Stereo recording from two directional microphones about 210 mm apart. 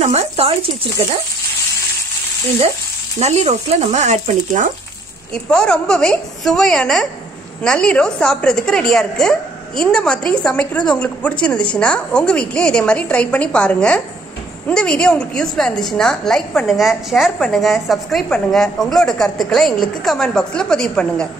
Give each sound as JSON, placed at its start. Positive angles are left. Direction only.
{"t": 0.0, "sound": "speech", "side_deg": -30}
{"t": 3.2, "sound": "speech", "side_deg": -30}
{"t": 5.3, "sound": "a woman's voice", "side_deg": 5}